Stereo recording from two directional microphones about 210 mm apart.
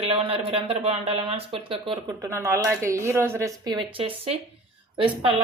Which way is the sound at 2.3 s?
10° right (ahead or behind).